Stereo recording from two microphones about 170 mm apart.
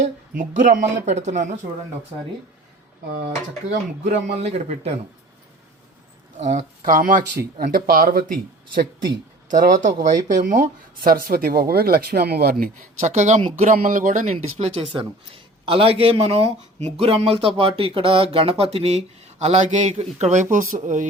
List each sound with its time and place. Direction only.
0.0 s speech: 50° right (ahead or behind)
4.3 s speech: 40° right (ahead or behind)
6.3 s speech: 45° right (ahead or behind); by 8.9 s 60° right (ahead or behind)
9.5 s speech: 50° right (ahead or behind)
14.3 s speech: 35° right (ahead or behind)